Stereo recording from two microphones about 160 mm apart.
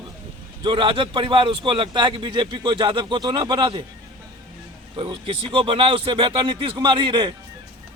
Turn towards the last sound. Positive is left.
turn(degrees=-30)  # may be behind; listen again after turning